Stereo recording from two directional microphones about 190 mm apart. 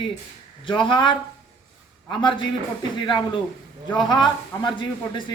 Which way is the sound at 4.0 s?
25° left (ahead or behind).